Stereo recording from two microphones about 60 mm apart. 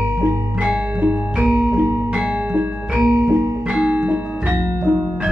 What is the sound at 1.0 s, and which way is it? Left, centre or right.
Music, right.